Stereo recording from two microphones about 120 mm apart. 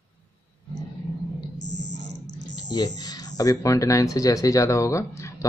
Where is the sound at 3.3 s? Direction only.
30° left (ahead or behind).